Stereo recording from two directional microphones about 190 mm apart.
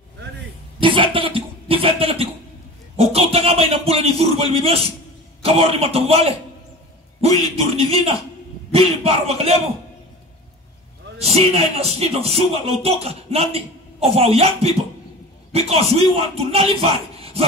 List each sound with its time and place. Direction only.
0.7 s a sound: 25° right (ahead or behind)
5.4 s a man's voice: 30° right (ahead or behind)
11.1 s speech: 35° right (ahead or behind)